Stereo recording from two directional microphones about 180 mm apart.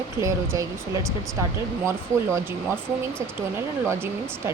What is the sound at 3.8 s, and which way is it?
Speech, 15° right (ahead or behind).